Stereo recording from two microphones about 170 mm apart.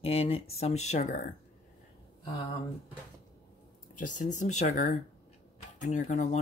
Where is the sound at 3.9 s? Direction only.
50° left (ahead or behind).